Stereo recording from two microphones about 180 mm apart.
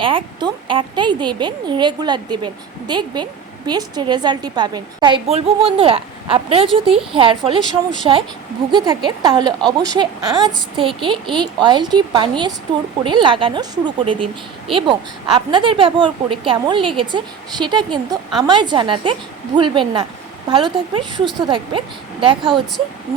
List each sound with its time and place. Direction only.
0.0 s speech: 30° right (ahead or behind)